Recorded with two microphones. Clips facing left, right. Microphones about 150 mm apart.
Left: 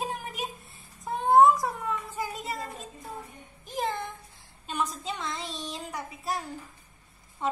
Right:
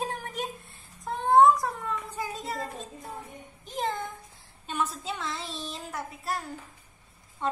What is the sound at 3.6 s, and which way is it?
A woman's voice, centre (ahead or behind).